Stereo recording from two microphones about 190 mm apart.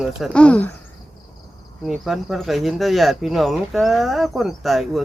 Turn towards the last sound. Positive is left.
turn(degrees=0)  # may be behind; listen again after turning